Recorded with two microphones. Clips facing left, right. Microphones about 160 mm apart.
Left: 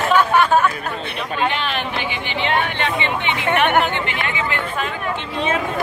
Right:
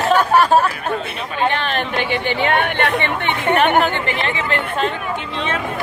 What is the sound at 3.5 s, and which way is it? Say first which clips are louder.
Speech: right 2 dB; 35° right (ahead or behind).